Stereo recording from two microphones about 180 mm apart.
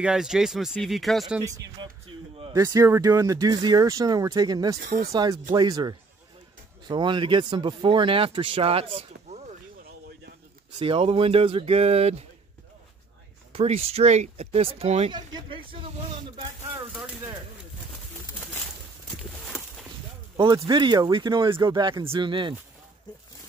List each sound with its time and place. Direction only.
0.0 s speech: 5° right (ahead or behind)
1.4 s speech: 20° right (ahead or behind)
2.5 s speech: 20° right (ahead or behind)
4.8 s speech: 50° right (ahead or behind)
5.1 s speech: 20° right (ahead or behind); by 9.6 s 35° right (ahead or behind)
10.8 s speech: 30° right (ahead or behind)
13.5 s speech: 35° right (ahead or behind)
16.9 s speech: 5° right (ahead or behind)
20.3 s speech: 20° right (ahead or behind)